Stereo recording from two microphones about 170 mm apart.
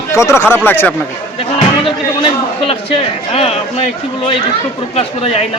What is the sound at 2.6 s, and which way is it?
Speech, 30° left (ahead or behind).